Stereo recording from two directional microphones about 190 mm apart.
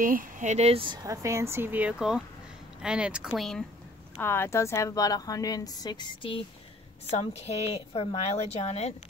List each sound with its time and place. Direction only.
0.0 s speech: 45° right (ahead or behind); by 3.6 s centre (ahead or behind)
4.2 s a woman's voice: 10° left (ahead or behind); by 8.9 s 35° left (ahead or behind)